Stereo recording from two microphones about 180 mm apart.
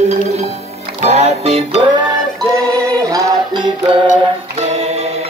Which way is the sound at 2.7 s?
20° right (ahead or behind).